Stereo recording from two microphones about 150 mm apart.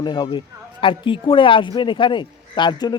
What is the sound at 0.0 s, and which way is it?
Speech, 30° left (ahead or behind).